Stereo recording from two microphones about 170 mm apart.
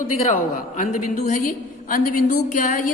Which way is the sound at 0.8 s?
50° left (ahead or behind).